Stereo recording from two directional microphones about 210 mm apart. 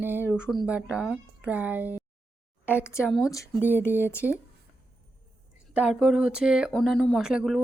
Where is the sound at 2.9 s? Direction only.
10° left (ahead or behind).